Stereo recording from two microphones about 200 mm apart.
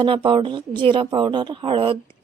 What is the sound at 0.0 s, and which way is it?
Speech, 25° right (ahead or behind).